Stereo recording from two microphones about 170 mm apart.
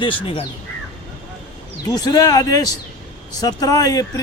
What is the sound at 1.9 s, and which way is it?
Speech, 20° left (ahead or behind).